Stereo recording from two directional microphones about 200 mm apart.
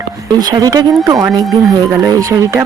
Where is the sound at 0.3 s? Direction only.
20° right (ahead or behind).